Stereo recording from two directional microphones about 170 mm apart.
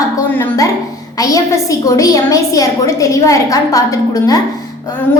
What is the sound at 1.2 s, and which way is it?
A woman's voice, 20° left (ahead or behind).